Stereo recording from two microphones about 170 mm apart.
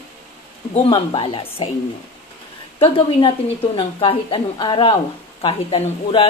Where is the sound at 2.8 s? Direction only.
30° left (ahead or behind).